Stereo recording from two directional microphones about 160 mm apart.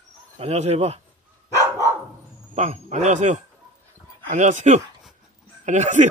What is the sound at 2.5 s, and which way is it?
Speech, 45° right (ahead or behind).